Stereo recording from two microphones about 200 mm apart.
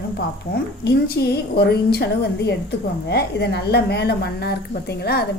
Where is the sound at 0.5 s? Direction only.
55° left (ahead or behind).